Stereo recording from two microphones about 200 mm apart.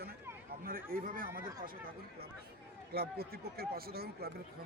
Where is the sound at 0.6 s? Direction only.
45° right (ahead or behind).